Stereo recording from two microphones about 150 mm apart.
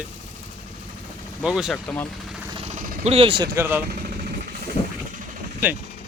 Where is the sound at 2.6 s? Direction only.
50° right (ahead or behind).